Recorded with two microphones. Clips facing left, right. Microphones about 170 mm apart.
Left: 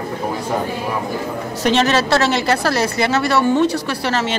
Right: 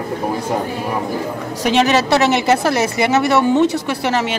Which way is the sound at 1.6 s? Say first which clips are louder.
Right 1 dB; 10° right (ahead or behind).